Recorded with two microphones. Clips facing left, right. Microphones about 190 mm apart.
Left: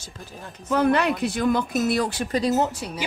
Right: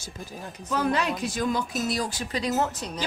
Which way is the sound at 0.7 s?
60° left (ahead or behind).